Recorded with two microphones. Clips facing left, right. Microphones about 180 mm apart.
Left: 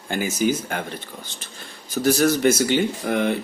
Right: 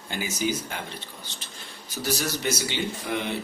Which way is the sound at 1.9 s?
50° left (ahead or behind).